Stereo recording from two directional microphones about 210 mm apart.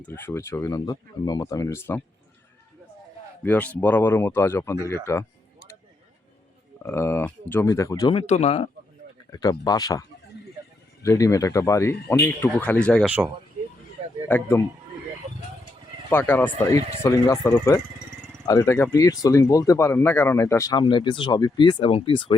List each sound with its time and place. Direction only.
0.0 s speech: 10° left (ahead or behind)
3.4 s speech: 5° left (ahead or behind)
6.8 s speech: 10° left (ahead or behind); by 8.7 s 30° left (ahead or behind)
9.3 s speech: 20° left (ahead or behind)
13.1 s speech: 10° right (ahead or behind)
14.3 s speech: 10° left (ahead or behind)
16.0 s speech: 10° left (ahead or behind)